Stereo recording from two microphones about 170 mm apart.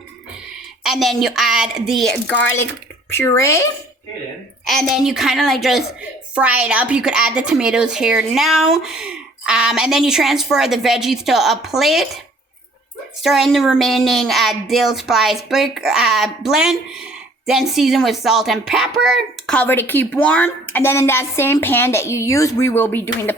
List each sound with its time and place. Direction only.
0.9 s speech: centre (ahead or behind)
3.1 s speech: 15° left (ahead or behind)
4.6 s speech: centre (ahead or behind)
13.2 s speech: centre (ahead or behind)